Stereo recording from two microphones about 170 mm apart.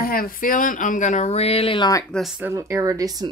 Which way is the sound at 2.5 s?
15° right (ahead or behind).